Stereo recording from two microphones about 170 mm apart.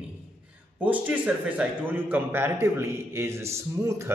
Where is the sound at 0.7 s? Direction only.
10° right (ahead or behind).